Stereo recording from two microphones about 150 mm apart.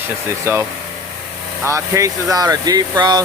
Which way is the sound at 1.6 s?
20° right (ahead or behind).